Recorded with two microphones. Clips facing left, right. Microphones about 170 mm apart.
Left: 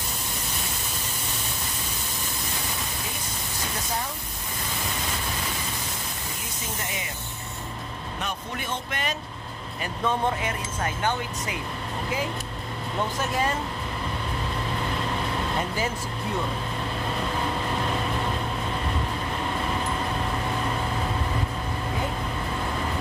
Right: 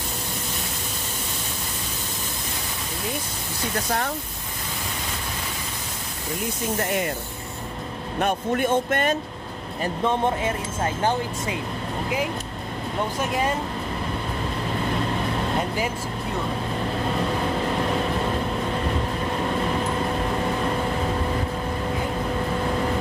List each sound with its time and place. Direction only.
6.8 s speech: 55° right (ahead or behind)
8.2 s speech: 50° right (ahead or behind)
10.0 s speech: 25° right (ahead or behind)